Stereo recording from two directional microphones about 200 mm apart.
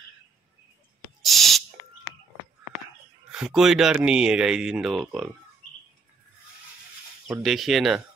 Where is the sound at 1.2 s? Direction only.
Centre (ahead or behind).